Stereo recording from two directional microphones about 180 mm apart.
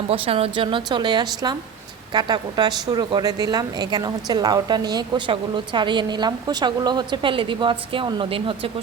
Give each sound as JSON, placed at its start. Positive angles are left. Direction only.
{"t": 0.1, "sound": "a woman's voice", "side_deg": -30}